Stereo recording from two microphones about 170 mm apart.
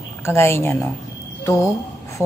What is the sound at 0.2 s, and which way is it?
Speech, 15° left (ahead or behind).